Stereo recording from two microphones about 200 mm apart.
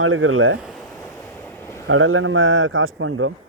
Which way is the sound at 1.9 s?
85° right.